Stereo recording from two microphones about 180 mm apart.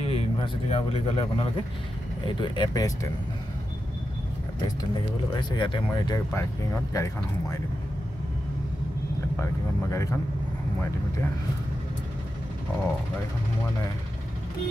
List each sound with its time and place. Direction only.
0.0 s speech: 35° left (ahead or behind)
4.6 s speech: 25° left (ahead or behind)
9.4 s speech: 15° left (ahead or behind)